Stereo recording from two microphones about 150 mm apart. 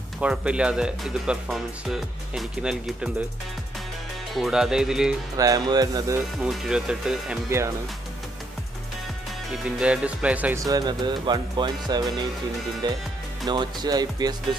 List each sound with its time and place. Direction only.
0.2 s speech: 5° right (ahead or behind)
4.3 s speech: centre (ahead or behind)
5.4 s speech: 25° right (ahead or behind)
6.4 s speech: 5° right (ahead or behind)
9.5 s speech: 5° right (ahead or behind)
10.6 s speech: 25° right (ahead or behind)